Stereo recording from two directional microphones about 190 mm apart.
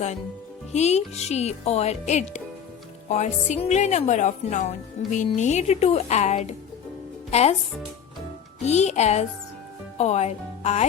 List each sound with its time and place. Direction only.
0.7 s speech: 35° left (ahead or behind)
8.6 s speech: 35° left (ahead or behind)